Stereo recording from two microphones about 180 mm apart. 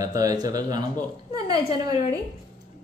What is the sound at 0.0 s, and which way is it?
A woman's voice, 20° right (ahead or behind).